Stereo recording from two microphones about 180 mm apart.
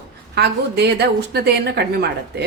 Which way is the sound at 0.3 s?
65° right (ahead or behind).